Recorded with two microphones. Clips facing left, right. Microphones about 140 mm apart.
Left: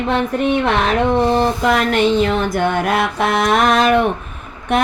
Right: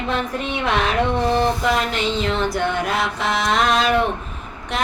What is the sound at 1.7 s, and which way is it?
Music, 55° left (ahead or behind).